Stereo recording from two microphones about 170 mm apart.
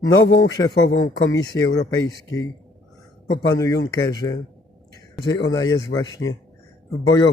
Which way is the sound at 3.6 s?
20° left (ahead or behind).